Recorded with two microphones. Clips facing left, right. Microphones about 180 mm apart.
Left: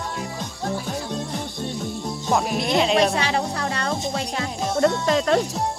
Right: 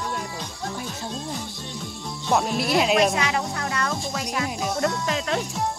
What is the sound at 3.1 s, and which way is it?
Music, 30° left (ahead or behind).